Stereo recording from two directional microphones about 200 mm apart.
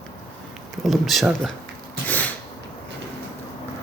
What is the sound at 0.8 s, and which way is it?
Speech, centre (ahead or behind).